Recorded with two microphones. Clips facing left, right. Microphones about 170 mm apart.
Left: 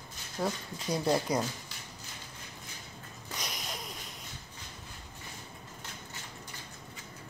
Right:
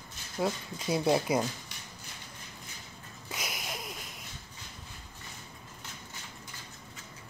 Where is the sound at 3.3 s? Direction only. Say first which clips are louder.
Right 1 dB; 5° right (ahead or behind).